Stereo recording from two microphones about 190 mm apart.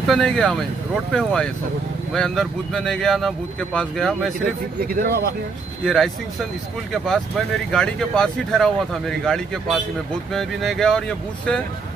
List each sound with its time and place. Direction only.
0.0 s speech: 5° left (ahead or behind)
4.7 s speech: 50° right (ahead or behind)
5.9 s speech: 5° left (ahead or behind)
7.7 s speech: 5° left (ahead or behind)